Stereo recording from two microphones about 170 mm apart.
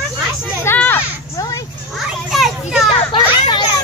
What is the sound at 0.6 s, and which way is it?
Children playing, 10° left (ahead or behind).